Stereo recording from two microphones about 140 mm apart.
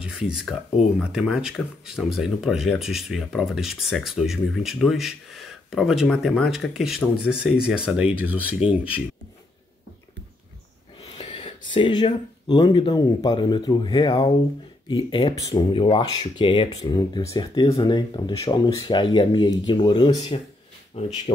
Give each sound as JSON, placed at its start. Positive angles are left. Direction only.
{"t": 0.0, "sound": "speech", "side_deg": -5}
{"t": 11.1, "sound": "a sound", "side_deg": 40}
{"t": 12.4, "sound": "speech", "side_deg": 30}
{"t": 15.3, "sound": "speech", "side_deg": 25}